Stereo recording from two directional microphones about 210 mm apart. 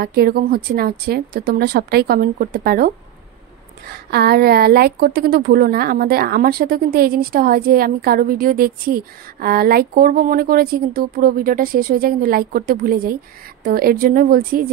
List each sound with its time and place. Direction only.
0.0 s a woman's voice: 45° right (ahead or behind)